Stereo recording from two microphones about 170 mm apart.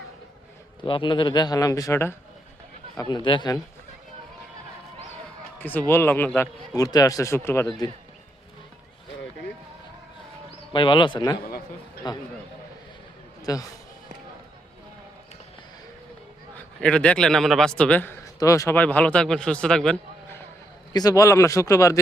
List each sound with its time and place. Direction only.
0.9 s a man's voice: 30° left (ahead or behind)
3.0 s a man's voice: 25° left (ahead or behind)
5.5 s a man's voice: 10° left (ahead or behind)
10.7 s a man's voice: 30° left (ahead or behind)
13.4 s a man's voice: 20° left (ahead or behind)
16.6 s a man's voice: 5° left (ahead or behind)
20.9 s a man's voice: 20° left (ahead or behind)